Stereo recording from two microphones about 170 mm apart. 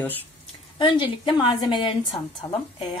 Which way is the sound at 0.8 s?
25° left (ahead or behind).